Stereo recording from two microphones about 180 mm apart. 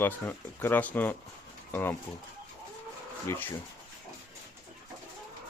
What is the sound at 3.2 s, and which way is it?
Speech, 10° left (ahead or behind).